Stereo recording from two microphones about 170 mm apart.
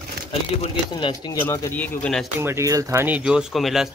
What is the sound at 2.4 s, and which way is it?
Speech, 15° right (ahead or behind).